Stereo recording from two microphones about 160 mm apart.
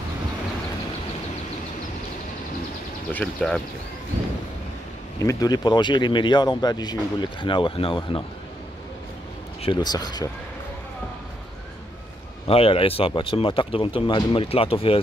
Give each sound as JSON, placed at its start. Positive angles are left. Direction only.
{"t": 3.1, "sound": "speech", "side_deg": 10}
{"t": 5.2, "sound": "speech", "side_deg": 20}
{"t": 9.6, "sound": "speech", "side_deg": 30}
{"t": 12.4, "sound": "speech", "side_deg": 35}